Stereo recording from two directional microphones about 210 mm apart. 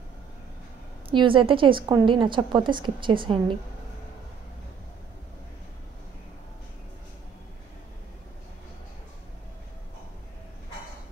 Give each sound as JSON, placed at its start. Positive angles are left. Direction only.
{"t": 1.1, "sound": "a woman's voice", "side_deg": -25}